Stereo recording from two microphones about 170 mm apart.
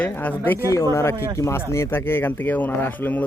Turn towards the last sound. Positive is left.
turn(degrees=10)  # may be behind; listen again after turning